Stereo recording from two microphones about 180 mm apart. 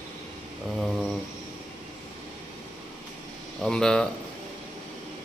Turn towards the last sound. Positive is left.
turn(degrees=5)  # may be behind; listen again after turning